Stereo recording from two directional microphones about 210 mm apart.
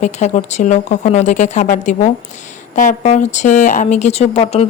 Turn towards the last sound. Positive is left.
turn(degrees=30)  # may be behind; listen again after turning